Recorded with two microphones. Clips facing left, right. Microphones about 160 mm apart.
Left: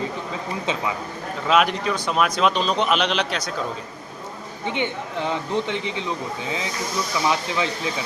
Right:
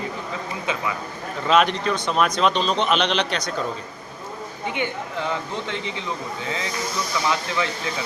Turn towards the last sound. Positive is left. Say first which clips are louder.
# left 1 dB
turn(degrees=20)  # may be behind; listen again after turning